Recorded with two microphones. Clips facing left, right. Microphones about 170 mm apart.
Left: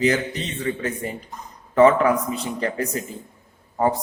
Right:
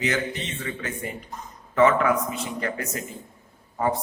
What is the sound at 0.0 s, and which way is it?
A man's voice, 35° left (ahead or behind).